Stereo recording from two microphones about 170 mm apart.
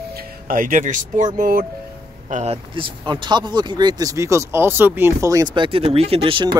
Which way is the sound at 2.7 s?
30° right (ahead or behind).